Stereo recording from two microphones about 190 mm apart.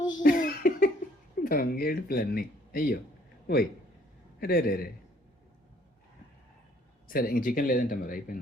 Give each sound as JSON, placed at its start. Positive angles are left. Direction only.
{"t": 0.2, "sound": "a sound", "side_deg": 45}
{"t": 1.5, "sound": "a man's voice", "side_deg": 50}
{"t": 7.1, "sound": "speech", "side_deg": 50}